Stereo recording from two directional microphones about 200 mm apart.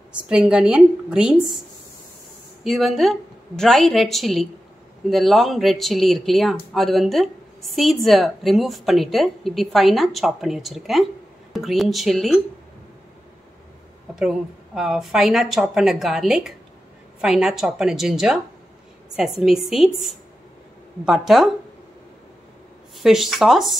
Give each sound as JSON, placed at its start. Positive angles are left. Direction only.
{"t": 0.1, "sound": "a woman's voice", "side_deg": -5}
{"t": 2.6, "sound": "a woman's voice", "side_deg": 0}
{"t": 14.8, "sound": "a woman's voice", "side_deg": 0}
{"t": 21.0, "sound": "a woman's voice", "side_deg": 0}
{"t": 22.9, "sound": "a woman's voice", "side_deg": 0}